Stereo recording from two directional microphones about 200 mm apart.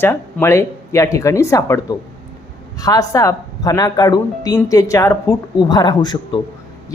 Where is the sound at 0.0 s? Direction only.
10° left (ahead or behind).